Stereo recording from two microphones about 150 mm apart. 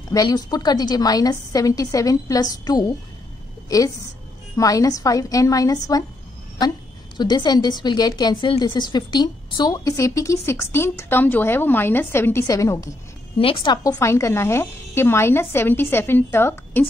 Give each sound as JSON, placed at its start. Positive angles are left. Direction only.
{"t": 0.1, "sound": "a woman's voice", "side_deg": 25}
{"t": 7.2, "sound": "a woman's voice", "side_deg": 30}
{"t": 13.4, "sound": "speech", "side_deg": 35}